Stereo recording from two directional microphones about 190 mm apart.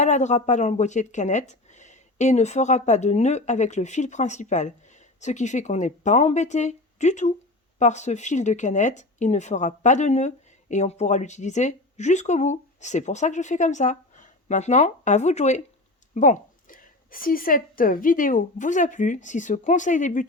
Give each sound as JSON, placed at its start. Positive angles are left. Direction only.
{"t": 0.0, "sound": "speech", "side_deg": 40}